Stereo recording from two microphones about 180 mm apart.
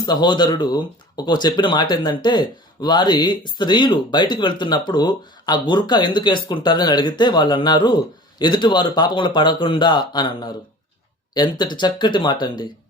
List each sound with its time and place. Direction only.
0.0 s speech: 25° left (ahead or behind)